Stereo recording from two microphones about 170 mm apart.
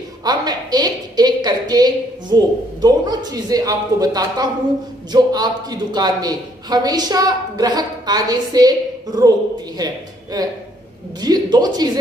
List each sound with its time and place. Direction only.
0.2 s a woman's voice: 25° right (ahead or behind)
10.3 s a man's voice: 20° right (ahead or behind)